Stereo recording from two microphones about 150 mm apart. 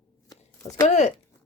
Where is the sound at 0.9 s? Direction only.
50° left (ahead or behind).